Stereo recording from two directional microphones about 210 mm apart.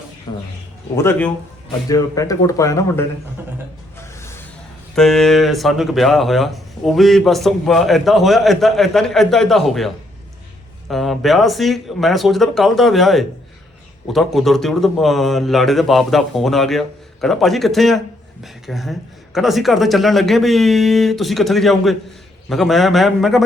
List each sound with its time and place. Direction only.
0.3 s speech: 20° left (ahead or behind)
4.2 s vehicle: 10° left (ahead or behind)
4.9 s speech: centre (ahead or behind)